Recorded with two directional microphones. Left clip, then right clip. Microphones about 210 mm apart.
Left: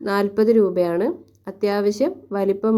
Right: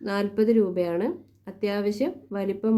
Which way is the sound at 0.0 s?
20° left (ahead or behind).